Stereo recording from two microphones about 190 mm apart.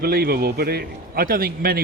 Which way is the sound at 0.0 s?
55° right (ahead or behind).